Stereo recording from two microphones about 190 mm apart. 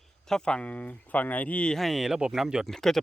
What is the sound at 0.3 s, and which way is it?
Speech, 5° left (ahead or behind).